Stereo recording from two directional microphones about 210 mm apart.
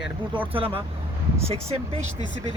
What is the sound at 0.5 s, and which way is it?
Speech, 25° right (ahead or behind).